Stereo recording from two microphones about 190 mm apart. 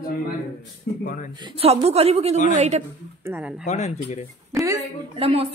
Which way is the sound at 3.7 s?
35° left (ahead or behind).